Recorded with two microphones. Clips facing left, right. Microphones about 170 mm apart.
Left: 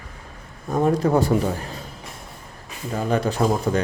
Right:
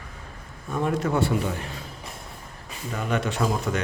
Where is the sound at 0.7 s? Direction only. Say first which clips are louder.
Left 6 dB; 40° left (ahead or behind).